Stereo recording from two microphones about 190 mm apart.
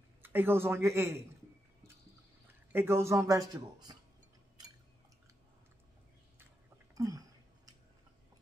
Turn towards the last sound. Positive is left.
turn(degrees=-20)  # may be behind; listen again after turning